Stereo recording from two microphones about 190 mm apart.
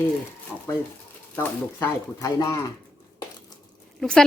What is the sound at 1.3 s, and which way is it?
Speech, 15° left (ahead or behind).